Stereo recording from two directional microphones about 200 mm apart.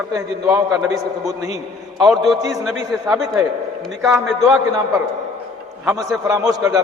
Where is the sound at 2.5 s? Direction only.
Centre (ahead or behind).